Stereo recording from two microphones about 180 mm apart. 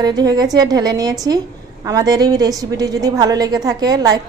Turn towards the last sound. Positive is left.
turn(degrees=-20)  # may be behind; listen again after turning